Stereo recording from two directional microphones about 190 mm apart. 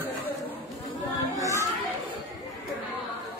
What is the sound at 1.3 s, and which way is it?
Children playing, 15° right (ahead or behind).